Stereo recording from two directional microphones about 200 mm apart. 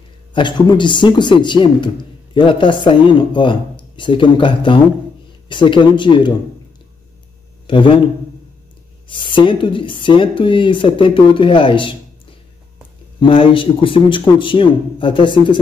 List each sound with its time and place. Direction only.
0.3 s speech: 25° left (ahead or behind)
7.6 s speech: 25° left (ahead or behind)
9.0 s speech: 25° left (ahead or behind)
13.2 s speech: 25° left (ahead or behind)